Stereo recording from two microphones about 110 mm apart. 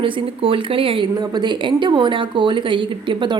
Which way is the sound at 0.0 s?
55° right (ahead or behind).